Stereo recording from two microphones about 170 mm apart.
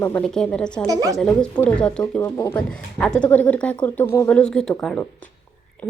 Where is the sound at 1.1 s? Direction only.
5° left (ahead or behind).